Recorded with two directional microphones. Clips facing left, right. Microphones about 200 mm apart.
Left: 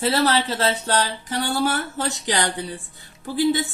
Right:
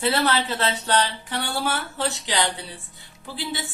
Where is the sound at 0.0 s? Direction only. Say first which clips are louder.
Left 2 dB; 40° left (ahead or behind).